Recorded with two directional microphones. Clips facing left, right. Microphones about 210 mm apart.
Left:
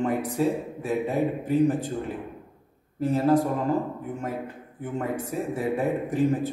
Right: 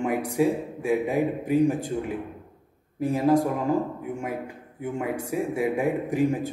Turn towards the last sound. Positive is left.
turn(degrees=-10)  # may be behind; listen again after turning